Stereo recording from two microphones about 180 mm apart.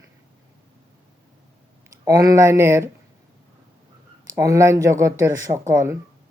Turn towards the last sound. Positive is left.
turn(degrees=-15)  # may be behind; listen again after turning